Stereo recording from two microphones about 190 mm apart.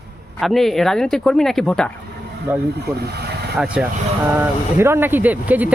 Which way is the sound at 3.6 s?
5° right (ahead or behind).